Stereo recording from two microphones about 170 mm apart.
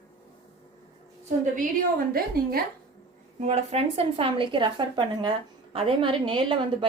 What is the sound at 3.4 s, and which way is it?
Speech, 40° right (ahead or behind).